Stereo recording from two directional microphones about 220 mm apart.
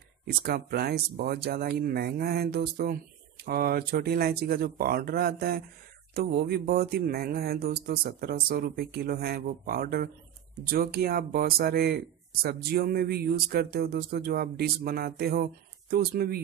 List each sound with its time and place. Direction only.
0.2 s speech: 45° right (ahead or behind)